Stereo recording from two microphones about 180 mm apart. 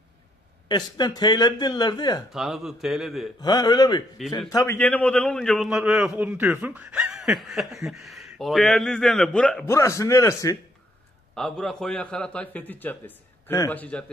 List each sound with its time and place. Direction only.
0.7 s speech: 25° left (ahead or behind)
2.3 s a man's voice: centre (ahead or behind)
3.3 s a man's voice: 20° left (ahead or behind)
11.3 s a man's voice: 5° left (ahead or behind)